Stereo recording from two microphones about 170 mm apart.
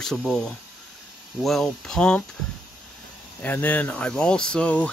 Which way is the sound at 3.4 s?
10° left (ahead or behind).